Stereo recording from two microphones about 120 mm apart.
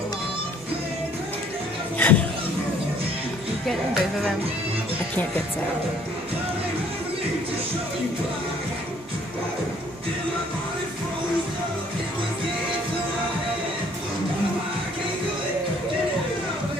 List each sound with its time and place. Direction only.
2.0 s speech: 15° left (ahead or behind)